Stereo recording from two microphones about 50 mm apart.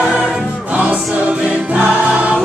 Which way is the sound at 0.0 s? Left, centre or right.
Centre.